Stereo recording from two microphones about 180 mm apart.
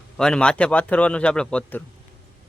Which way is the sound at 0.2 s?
5° left (ahead or behind).